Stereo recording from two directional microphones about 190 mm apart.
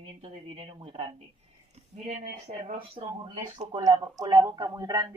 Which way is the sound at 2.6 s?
30° right (ahead or behind).